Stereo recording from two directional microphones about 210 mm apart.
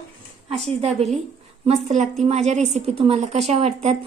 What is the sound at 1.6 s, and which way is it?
A woman's voice, 30° right (ahead or behind).